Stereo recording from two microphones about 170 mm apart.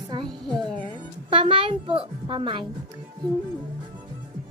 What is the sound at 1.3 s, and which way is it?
Speech, 30° right (ahead or behind).